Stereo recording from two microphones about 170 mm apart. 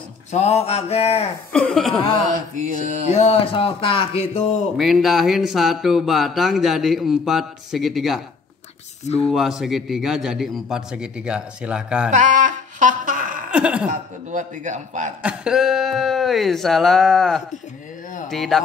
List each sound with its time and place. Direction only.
0.3 s speech: 40° left (ahead or behind)
1.5 s speech: 5° left (ahead or behind)
2.5 s a man's voice: 45° right (ahead or behind)
3.1 s speech: 40° left (ahead or behind)
4.7 s speech: centre (ahead or behind)
9.0 s speech: 40° left (ahead or behind)
9.3 s speech: centre (ahead or behind)
12.1 s a sound: 45° right (ahead or behind)
13.5 s a sound: 5° right (ahead or behind)
13.8 s a man's voice: 45° right (ahead or behind)
15.2 s speech: 5° right (ahead or behind)